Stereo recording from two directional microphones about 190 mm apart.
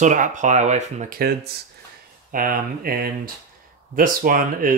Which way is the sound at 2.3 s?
50° right (ahead or behind).